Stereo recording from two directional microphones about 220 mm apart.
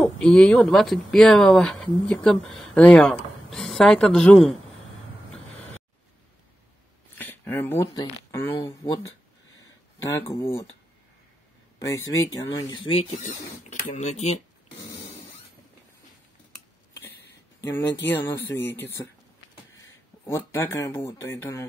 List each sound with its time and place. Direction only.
0.0 s speech: 5° left (ahead or behind)
7.2 s speech: 10° left (ahead or behind)
10.0 s speech: 15° left (ahead or behind)
12.1 s speech: 15° left (ahead or behind)
13.7 s speech: 35° left (ahead or behind)
17.6 s speech: 10° left (ahead or behind)
20.2 s speech: 10° left (ahead or behind)